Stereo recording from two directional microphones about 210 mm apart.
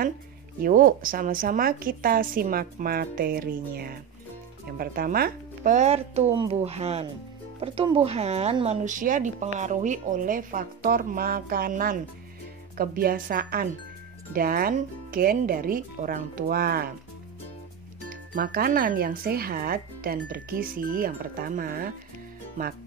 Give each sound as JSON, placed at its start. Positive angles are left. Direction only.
{"t": 0.6, "sound": "speech", "side_deg": -40}
{"t": 18.3, "sound": "speech", "side_deg": -45}